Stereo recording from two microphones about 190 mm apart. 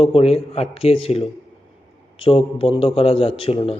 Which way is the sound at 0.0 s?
30° left (ahead or behind).